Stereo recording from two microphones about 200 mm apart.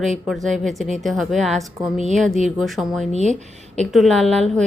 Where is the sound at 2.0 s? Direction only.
35° right (ahead or behind).